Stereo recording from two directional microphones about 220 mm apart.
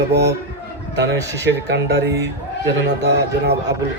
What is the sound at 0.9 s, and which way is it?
A man's voice, 50° right (ahead or behind).